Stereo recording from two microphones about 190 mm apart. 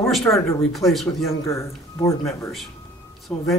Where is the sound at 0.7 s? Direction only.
Centre (ahead or behind).